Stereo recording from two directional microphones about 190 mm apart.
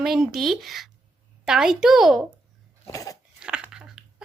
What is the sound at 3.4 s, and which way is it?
Biting, 5° right (ahead or behind).